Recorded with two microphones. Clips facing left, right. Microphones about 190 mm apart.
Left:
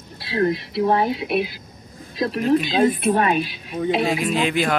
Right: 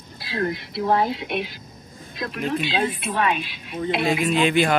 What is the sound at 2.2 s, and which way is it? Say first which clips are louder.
Speech: left 7 dB; 35° left (ahead or behind).